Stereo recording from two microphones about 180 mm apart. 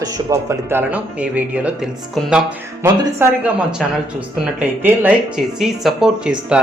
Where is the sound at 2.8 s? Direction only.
20° right (ahead or behind).